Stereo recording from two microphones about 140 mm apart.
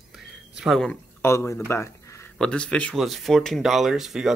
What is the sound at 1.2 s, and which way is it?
Speech, 20° left (ahead or behind).